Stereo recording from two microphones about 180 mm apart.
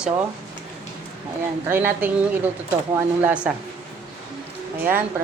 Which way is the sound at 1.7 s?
10° right (ahead or behind).